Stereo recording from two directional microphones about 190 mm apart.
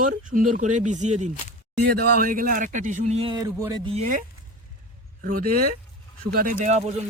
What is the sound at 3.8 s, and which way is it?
Speech, 35° right (ahead or behind).